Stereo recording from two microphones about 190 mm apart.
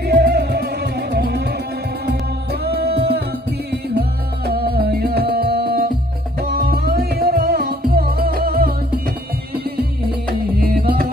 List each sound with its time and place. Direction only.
0.0 s music: 55° right (ahead or behind)
2.6 s music: 55° right (ahead or behind)
4.5 s music: 55° right (ahead or behind)
10.6 s music: 55° right (ahead or behind)